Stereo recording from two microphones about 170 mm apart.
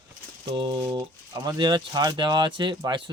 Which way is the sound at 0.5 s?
25° right (ahead or behind).